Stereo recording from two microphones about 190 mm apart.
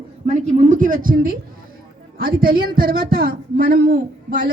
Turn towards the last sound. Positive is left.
turn(degrees=-55)  # may be behind; listen again after turning